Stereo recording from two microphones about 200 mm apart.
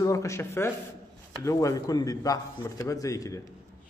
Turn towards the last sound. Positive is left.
turn(degrees=15)  # may be behind; listen again after turning